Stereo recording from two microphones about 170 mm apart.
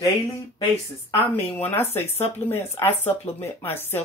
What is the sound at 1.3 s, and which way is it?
Speech, 10° left (ahead or behind).